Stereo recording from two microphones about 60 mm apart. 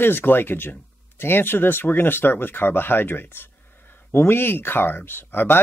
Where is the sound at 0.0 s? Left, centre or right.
Left.